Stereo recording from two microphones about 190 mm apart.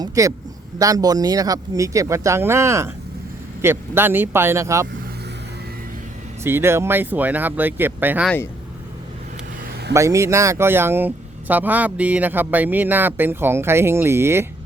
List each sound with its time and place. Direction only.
0.0 s speech: 15° right (ahead or behind)
6.4 s speech: 15° right (ahead or behind)
9.9 s speech: 15° right (ahead or behind)